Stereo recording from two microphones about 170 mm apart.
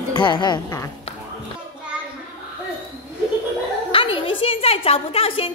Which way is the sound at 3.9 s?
30° left (ahead or behind).